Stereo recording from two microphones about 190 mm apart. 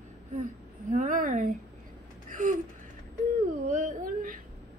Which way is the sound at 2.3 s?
40° right (ahead or behind).